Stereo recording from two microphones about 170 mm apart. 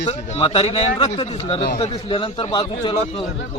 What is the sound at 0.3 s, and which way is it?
A man's voice, 35° left (ahead or behind).